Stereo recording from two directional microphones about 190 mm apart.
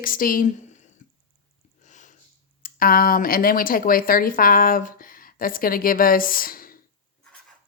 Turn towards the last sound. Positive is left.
turn(degrees=50)  # may be behind; listen again after turning